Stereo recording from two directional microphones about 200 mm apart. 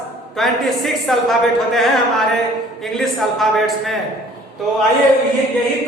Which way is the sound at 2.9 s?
Centre (ahead or behind).